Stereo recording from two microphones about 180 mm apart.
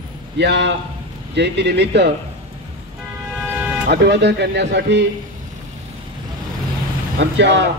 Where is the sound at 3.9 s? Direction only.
70° right (ahead or behind).